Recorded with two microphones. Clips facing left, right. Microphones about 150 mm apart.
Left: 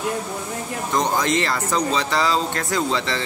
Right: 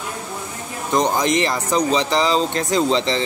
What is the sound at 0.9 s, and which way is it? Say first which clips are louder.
Speech: right 3 dB; 15° right (ahead or behind).